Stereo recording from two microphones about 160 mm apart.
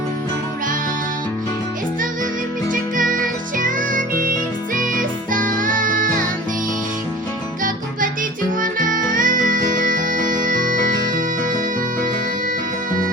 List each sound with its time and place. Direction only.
2.9 s music: 60° right (ahead or behind)
9.1 s music: 60° right (ahead or behind)